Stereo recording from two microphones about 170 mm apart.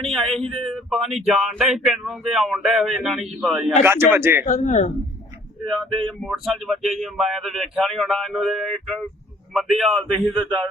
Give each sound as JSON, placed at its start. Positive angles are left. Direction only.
{"t": 0.0, "sound": "speech", "side_deg": 5}
{"t": 3.8, "sound": "speech", "side_deg": -15}
{"t": 4.4, "sound": "speech", "side_deg": 45}
{"t": 5.6, "sound": "speech", "side_deg": 0}